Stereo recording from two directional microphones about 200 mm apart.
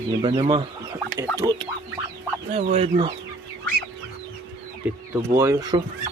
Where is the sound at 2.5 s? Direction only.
30° right (ahead or behind).